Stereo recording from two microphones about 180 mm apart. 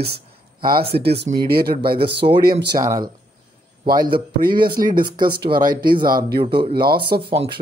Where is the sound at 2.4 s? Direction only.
70° right (ahead or behind).